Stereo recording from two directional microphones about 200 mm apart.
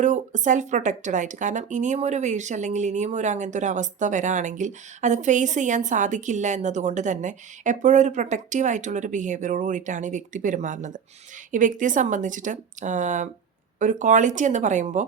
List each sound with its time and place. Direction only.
0.0 s speech: 35° right (ahead or behind)